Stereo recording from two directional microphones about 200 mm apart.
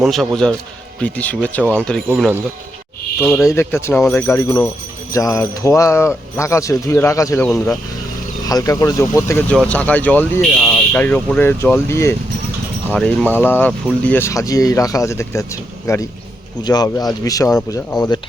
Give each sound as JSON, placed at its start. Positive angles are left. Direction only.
{"t": 0.0, "sound": "a man's voice", "side_deg": 0}
{"t": 3.2, "sound": "speech", "side_deg": 10}
{"t": 7.4, "sound": "a man's voice", "side_deg": 5}
{"t": 8.4, "sound": "speech", "side_deg": 15}
{"t": 16.6, "sound": "speech", "side_deg": 20}